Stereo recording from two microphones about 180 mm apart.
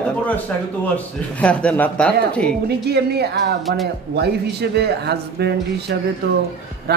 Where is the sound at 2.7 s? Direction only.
65° right (ahead or behind).